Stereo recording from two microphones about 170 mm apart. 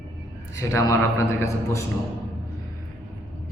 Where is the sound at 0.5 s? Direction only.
20° left (ahead or behind).